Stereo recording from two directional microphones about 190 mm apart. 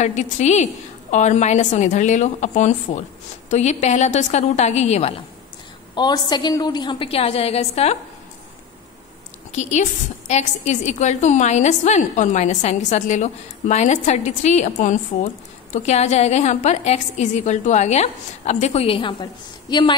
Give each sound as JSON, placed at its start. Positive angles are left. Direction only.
{"t": 0.0, "sound": "a woman's voice", "side_deg": 35}
{"t": 5.9, "sound": "a woman's voice", "side_deg": 20}
{"t": 9.5, "sound": "a woman's voice", "side_deg": 40}